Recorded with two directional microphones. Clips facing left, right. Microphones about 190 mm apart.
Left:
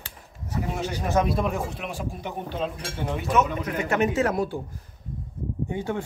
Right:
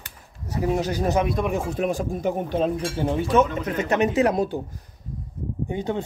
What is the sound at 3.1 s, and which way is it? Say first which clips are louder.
Speech: right 3 dB; 30° right (ahead or behind).